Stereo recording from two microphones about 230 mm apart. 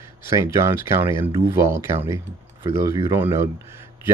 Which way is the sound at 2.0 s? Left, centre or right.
Right.